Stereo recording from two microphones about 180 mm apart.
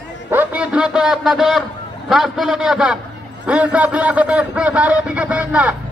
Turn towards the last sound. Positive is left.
turn(degrees=-5)  # may be behind; listen again after turning